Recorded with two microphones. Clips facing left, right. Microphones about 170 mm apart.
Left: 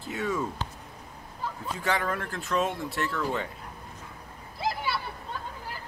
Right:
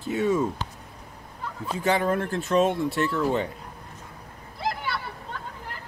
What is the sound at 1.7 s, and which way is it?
Speech, 20° right (ahead or behind).